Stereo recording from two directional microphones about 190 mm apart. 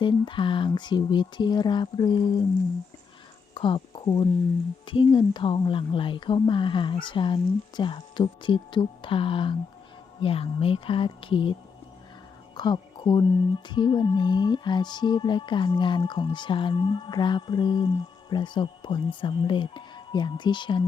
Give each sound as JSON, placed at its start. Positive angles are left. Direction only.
{"t": 0.0, "sound": "speech", "side_deg": 25}
{"t": 3.5, "sound": "speech", "side_deg": 25}
{"t": 12.5, "sound": "speech", "side_deg": 25}